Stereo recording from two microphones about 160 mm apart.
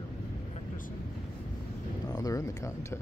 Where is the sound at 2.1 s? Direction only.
20° left (ahead or behind).